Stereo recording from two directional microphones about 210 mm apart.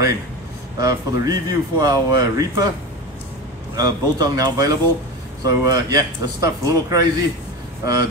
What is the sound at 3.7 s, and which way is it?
Speech, 20° right (ahead or behind).